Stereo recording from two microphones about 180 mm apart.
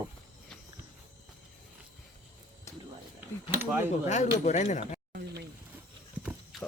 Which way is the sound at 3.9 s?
40° left (ahead or behind).